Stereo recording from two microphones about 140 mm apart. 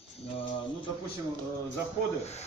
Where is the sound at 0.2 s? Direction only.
40° left (ahead or behind).